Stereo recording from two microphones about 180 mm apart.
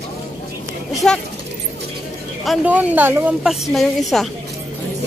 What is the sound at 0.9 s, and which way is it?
Speech, 5° left (ahead or behind).